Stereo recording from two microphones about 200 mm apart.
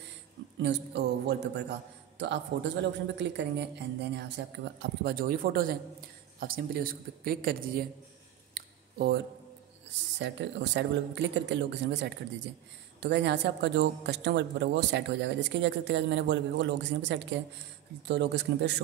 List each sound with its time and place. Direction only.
0.6 s speech: 60° right (ahead or behind)
4.7 s speech: 50° right (ahead or behind)
8.5 s a sound: 50° right (ahead or behind)
10.1 s speech: 60° right (ahead or behind)